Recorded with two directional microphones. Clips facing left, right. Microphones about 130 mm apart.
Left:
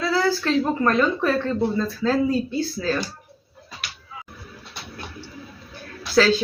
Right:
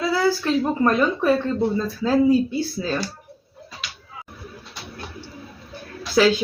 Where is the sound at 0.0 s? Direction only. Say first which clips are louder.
Right 1 dB; 15° right (ahead or behind).